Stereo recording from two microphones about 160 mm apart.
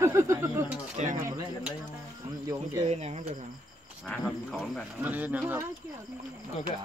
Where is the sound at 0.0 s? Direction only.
15° right (ahead or behind).